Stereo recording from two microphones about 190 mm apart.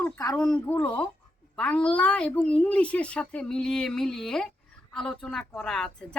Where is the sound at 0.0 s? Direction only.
15° left (ahead or behind).